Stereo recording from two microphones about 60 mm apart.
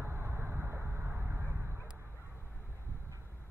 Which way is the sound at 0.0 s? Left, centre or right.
Right.